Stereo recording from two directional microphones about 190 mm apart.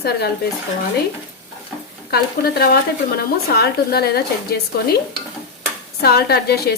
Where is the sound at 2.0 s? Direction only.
55° left (ahead or behind).